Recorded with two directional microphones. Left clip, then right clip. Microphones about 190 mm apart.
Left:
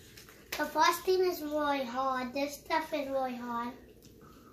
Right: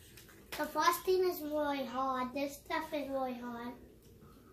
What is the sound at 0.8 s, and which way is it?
A child's voice, centre (ahead or behind).